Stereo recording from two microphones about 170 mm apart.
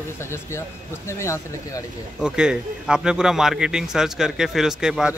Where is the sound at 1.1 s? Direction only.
15° left (ahead or behind).